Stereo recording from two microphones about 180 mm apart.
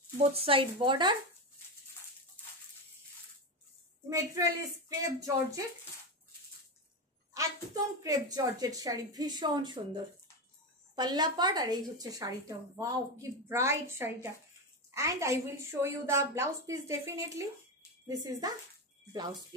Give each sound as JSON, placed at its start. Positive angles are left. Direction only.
{"t": 0.2, "sound": "a woman's voice", "side_deg": -35}
{"t": 4.1, "sound": "a woman's voice", "side_deg": -20}
{"t": 7.3, "sound": "a woman's voice", "side_deg": -20}
{"t": 11.0, "sound": "a woman's voice", "side_deg": -25}